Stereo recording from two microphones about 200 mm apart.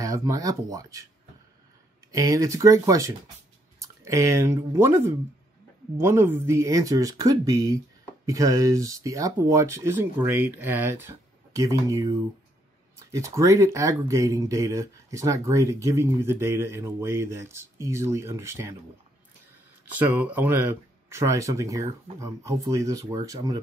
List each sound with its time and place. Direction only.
0.0 s speech: 15° right (ahead or behind)
2.1 s speech: 15° right (ahead or behind)
20.0 s speech: 10° right (ahead or behind)